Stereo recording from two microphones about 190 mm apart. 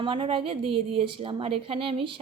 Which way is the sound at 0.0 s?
25° right (ahead or behind).